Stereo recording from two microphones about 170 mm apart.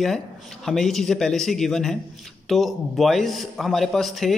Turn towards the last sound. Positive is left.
turn(degrees=0)  # may be behind; listen again after turning